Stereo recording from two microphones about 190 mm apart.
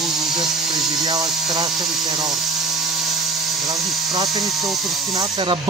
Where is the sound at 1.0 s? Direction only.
20° right (ahead or behind).